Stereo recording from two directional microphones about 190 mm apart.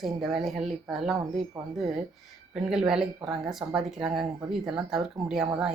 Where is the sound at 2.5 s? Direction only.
Centre (ahead or behind).